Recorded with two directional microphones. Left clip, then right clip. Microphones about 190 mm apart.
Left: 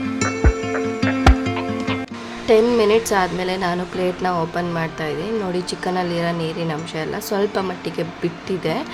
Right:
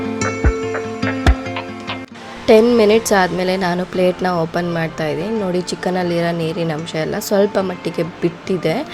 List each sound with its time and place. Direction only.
0.2 s music: 5° left (ahead or behind)
2.5 s speech: 25° right (ahead or behind)